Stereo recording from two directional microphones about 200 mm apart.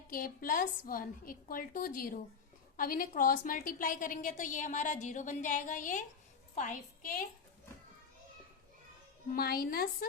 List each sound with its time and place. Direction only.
0.1 s a woman's voice: 45° left (ahead or behind)
9.3 s a woman's voice: 50° left (ahead or behind)